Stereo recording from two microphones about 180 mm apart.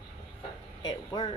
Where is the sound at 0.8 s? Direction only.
25° left (ahead or behind).